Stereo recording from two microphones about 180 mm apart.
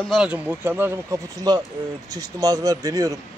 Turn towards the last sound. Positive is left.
turn(degrees=-20)  # may be behind; listen again after turning